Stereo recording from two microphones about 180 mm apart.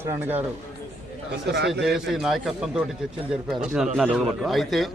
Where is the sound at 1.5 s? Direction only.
70° right (ahead or behind).